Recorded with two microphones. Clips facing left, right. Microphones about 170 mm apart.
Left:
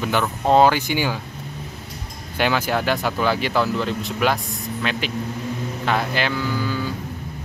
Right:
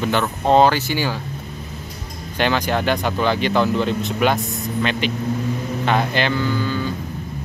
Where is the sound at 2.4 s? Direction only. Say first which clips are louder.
Right 1 dB; 5° left (ahead or behind).